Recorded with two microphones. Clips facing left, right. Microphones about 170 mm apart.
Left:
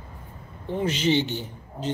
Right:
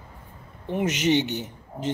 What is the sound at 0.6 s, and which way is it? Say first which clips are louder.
Speech: right 1 dB; 20° right (ahead or behind).